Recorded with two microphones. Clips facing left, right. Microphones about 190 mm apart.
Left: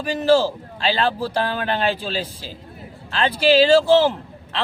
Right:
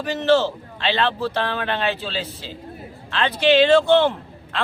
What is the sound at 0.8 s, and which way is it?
Speech, 35° left (ahead or behind).